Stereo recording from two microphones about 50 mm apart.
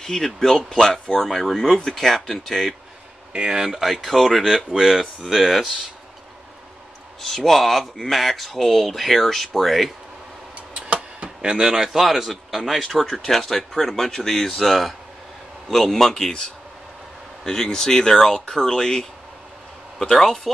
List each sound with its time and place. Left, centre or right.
0.0 s speech: centre
3.3 s speech: centre
3.6 s speech: centre
7.2 s speech: centre
10.7 s tick-tock: right
11.2 s speech: centre